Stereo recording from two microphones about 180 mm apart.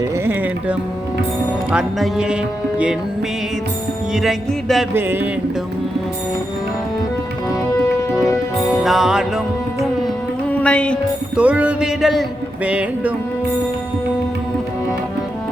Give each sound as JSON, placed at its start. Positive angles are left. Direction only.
{"t": 1.7, "sound": "music", "side_deg": -5}
{"t": 4.1, "sound": "music", "side_deg": 0}
{"t": 4.9, "sound": "music", "side_deg": -10}
{"t": 7.8, "sound": "music", "side_deg": 20}
{"t": 8.8, "sound": "music", "side_deg": 0}
{"t": 10.5, "sound": "music", "side_deg": 5}
{"t": 11.3, "sound": "music", "side_deg": -5}